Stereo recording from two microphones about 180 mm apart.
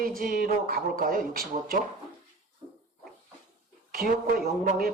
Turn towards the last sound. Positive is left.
turn(degrees=-60)  # may be behind; listen again after turning